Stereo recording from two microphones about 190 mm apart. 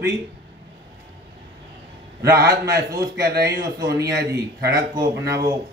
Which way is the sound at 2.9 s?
55° right (ahead or behind).